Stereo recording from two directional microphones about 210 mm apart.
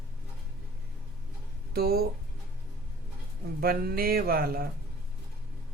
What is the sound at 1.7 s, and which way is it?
Speech, 45° right (ahead or behind).